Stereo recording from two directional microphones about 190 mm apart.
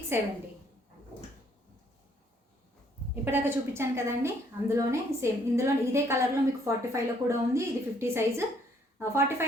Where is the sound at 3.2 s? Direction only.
10° right (ahead or behind).